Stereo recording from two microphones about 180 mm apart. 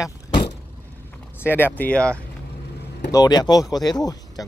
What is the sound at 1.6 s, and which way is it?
Speech, 10° left (ahead or behind).